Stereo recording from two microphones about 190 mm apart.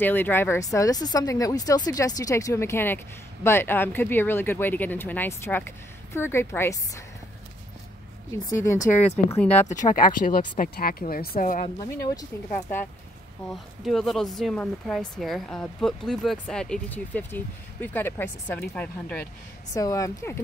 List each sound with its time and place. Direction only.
0.0 s speech: 10° left (ahead or behind)
8.7 s speech: 40° left (ahead or behind)
9.4 s speech: 5° left (ahead or behind)
9.8 s speech: 45° left (ahead or behind)
12.2 s speech: 15° left (ahead or behind)
13.5 s speech: centre (ahead or behind); by 20.3 s 15° left (ahead or behind)